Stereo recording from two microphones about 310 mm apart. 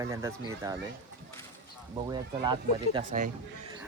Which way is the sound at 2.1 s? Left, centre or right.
Centre.